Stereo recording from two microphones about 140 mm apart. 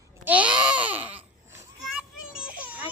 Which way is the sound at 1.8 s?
5° right (ahead or behind).